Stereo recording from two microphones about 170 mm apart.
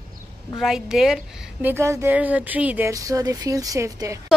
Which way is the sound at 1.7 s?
15° right (ahead or behind).